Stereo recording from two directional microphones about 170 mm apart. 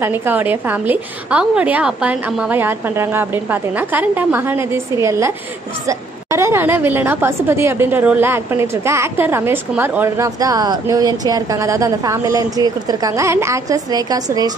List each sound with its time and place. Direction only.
0.0 s a woman's voice: 15° right (ahead or behind)